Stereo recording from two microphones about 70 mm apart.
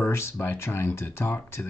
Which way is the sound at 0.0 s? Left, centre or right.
Left.